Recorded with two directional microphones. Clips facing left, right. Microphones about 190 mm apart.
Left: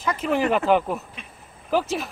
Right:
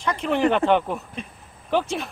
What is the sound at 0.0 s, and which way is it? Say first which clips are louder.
Speech: right 1 dB; 5° left (ahead or behind).